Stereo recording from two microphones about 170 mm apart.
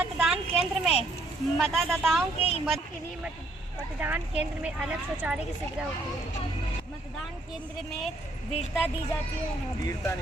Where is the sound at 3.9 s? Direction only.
10° right (ahead or behind).